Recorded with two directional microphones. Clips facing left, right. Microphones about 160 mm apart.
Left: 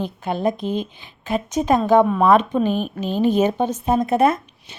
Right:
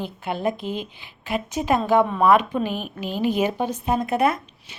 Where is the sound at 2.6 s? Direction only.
10° right (ahead or behind).